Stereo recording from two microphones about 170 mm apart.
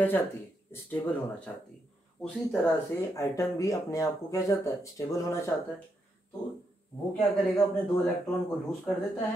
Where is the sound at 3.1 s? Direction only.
20° left (ahead or behind).